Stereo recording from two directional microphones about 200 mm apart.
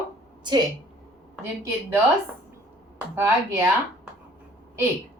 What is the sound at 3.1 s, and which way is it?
Speech, 10° right (ahead or behind).